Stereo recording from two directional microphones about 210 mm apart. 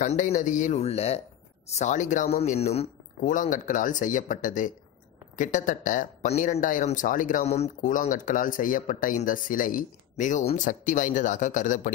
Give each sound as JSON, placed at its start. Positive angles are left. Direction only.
{"t": 0.0, "sound": "speech", "side_deg": 35}